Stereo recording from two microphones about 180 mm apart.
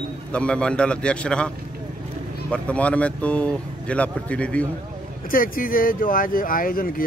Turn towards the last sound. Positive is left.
turn(degrees=50)  # may be behind; listen again after turning